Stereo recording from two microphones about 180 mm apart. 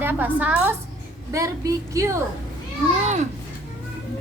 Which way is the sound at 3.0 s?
40° right (ahead or behind).